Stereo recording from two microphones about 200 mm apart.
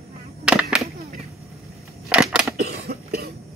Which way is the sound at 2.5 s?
55° right (ahead or behind).